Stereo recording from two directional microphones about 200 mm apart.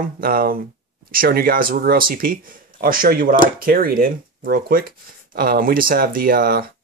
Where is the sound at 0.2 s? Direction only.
45° right (ahead or behind).